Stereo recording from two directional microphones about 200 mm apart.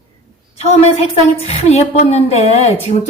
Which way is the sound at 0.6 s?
30° left (ahead or behind).